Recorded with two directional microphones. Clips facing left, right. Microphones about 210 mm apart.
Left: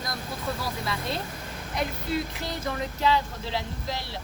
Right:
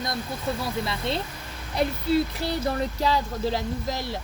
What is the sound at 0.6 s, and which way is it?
Speech, 25° right (ahead or behind).